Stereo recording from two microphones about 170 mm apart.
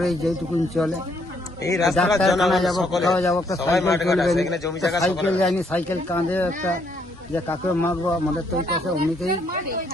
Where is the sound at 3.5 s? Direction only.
20° left (ahead or behind).